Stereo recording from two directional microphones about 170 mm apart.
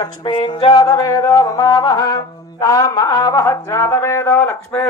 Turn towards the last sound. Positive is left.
turn(degrees=15)  # may be behind; listen again after turning